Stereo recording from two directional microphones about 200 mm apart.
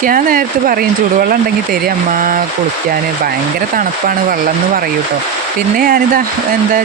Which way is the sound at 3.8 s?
45° right (ahead or behind).